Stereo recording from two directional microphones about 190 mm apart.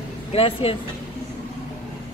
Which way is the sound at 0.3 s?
30° left (ahead or behind).